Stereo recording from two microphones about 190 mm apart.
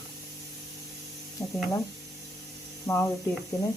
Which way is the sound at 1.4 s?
Centre (ahead or behind).